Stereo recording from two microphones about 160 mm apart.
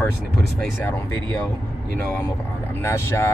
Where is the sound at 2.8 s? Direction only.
15° left (ahead or behind).